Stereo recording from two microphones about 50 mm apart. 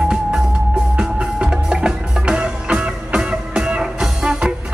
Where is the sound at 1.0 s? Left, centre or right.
Centre.